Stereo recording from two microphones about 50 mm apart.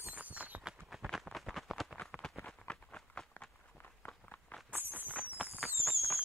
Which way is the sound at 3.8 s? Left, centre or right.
Left.